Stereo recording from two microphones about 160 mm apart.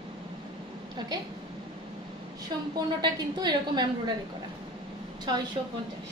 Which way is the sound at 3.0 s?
25° right (ahead or behind).